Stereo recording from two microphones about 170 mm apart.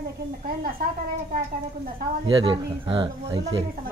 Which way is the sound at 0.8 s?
65° right (ahead or behind).